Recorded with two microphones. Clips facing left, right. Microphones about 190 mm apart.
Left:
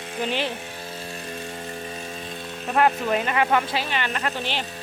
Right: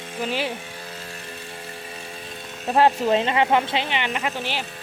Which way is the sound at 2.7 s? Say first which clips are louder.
Right 3 dB; 30° right (ahead or behind).